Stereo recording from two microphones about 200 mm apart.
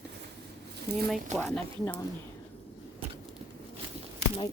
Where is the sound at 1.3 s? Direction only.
5° left (ahead or behind).